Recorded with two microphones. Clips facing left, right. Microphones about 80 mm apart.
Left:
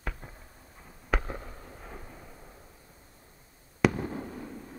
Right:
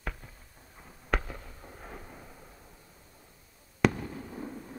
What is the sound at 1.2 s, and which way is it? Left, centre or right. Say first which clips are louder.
Fireworks: left 5 dB; left.